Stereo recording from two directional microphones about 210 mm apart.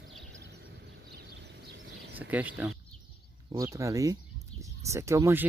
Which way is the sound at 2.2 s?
5° right (ahead or behind).